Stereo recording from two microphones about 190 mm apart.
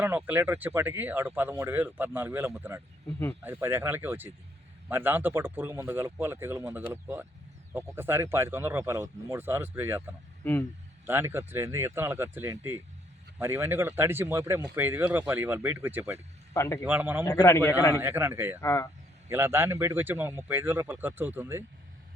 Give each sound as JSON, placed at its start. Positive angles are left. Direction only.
{"t": 0.0, "sound": "speech", "side_deg": -10}
{"t": 10.4, "sound": "a man's voice", "side_deg": 10}
{"t": 11.0, "sound": "speech", "side_deg": -10}
{"t": 16.6, "sound": "a man's voice", "side_deg": 15}
{"t": 16.8, "sound": "speech", "side_deg": -10}
{"t": 17.2, "sound": "a man's voice", "side_deg": 15}
{"t": 18.0, "sound": "speech", "side_deg": -10}
{"t": 18.6, "sound": "a man's voice", "side_deg": 15}
{"t": 19.3, "sound": "speech", "side_deg": -10}